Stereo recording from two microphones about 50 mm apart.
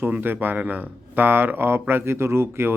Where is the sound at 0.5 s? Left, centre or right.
Right.